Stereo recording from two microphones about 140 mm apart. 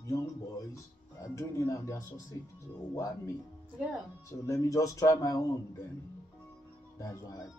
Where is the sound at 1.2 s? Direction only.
20° left (ahead or behind).